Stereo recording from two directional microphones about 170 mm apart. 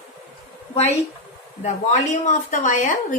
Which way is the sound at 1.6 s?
45° left (ahead or behind).